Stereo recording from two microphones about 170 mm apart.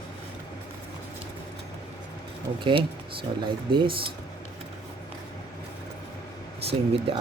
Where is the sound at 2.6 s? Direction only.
30° right (ahead or behind).